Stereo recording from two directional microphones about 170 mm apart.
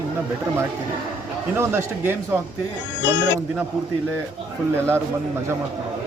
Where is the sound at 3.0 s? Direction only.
90° left.